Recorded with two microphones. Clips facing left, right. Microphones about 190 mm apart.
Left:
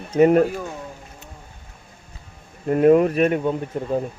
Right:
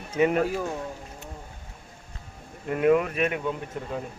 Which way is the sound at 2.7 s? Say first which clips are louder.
Left 7 dB; 40° left (ahead or behind).